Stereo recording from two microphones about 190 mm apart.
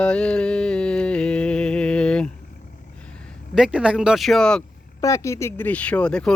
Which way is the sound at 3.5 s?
5° right (ahead or behind).